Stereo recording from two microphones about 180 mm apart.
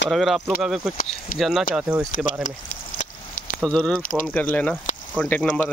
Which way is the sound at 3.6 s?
5° left (ahead or behind).